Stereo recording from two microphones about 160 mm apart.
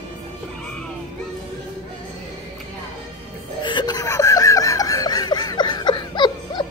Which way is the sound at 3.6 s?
25° left (ahead or behind).